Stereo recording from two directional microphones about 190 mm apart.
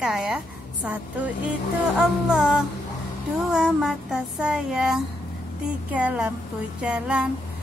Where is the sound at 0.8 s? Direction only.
5° right (ahead or behind).